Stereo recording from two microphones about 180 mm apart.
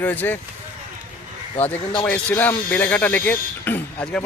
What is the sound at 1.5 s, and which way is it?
Speech, 30° left (ahead or behind).